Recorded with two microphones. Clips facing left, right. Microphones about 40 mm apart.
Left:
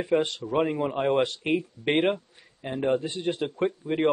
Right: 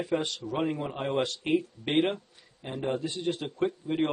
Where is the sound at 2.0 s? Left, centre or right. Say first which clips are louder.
Left 5 dB; centre.